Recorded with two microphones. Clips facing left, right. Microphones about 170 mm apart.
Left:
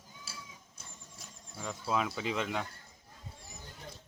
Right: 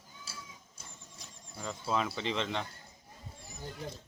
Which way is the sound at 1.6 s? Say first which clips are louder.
Even; centre (ahead or behind).